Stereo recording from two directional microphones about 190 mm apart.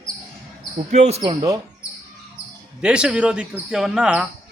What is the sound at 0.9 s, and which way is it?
Speech, 35° right (ahead or behind).